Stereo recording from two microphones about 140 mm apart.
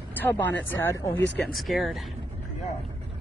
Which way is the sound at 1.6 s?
Centre (ahead or behind).